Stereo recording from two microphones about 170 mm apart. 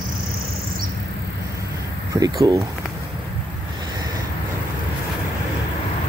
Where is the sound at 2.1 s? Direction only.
20° right (ahead or behind).